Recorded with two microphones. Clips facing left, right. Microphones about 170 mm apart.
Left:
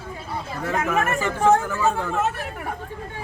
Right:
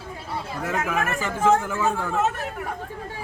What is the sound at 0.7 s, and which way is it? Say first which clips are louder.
Speech: left 3 dB; 5° right (ahead or behind).